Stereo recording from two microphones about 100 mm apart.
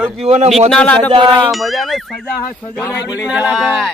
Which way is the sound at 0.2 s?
90° right.